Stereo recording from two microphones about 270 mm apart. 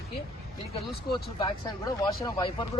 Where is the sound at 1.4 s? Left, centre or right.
Centre.